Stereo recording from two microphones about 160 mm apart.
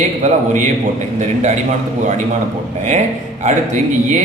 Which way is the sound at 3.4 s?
50° right (ahead or behind).